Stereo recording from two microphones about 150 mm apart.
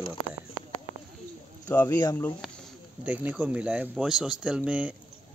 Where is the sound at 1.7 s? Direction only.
15° left (ahead or behind).